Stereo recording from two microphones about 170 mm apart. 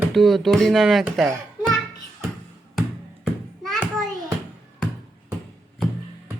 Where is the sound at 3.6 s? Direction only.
Centre (ahead or behind).